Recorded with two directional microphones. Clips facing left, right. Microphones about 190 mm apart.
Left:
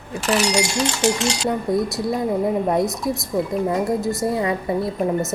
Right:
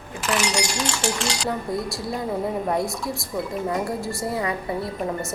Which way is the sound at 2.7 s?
20° left (ahead or behind).